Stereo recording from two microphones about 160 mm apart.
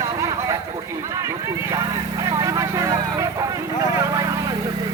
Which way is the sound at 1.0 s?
20° right (ahead or behind).